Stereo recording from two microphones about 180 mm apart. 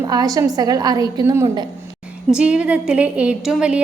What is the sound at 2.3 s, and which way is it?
A woman's voice, 5° right (ahead or behind).